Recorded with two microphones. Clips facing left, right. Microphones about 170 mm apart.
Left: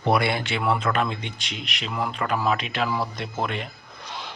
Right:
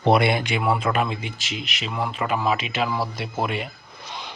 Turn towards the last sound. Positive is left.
turn(degrees=0)  # may be behind; listen again after turning